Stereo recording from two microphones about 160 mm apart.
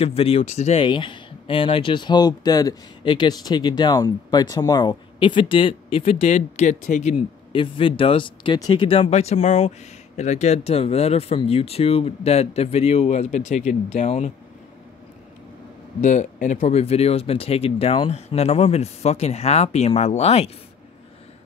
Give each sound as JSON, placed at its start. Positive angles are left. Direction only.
{"t": 0.0, "sound": "speech", "side_deg": 35}
{"t": 0.8, "sound": "speech", "side_deg": 30}
{"t": 6.3, "sound": "speech", "side_deg": 50}
{"t": 7.6, "sound": "speech", "side_deg": 30}
{"t": 16.0, "sound": "speech", "side_deg": 50}